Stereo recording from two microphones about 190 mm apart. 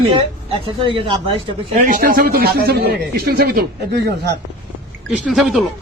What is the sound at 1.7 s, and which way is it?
Speech, 45° right (ahead or behind).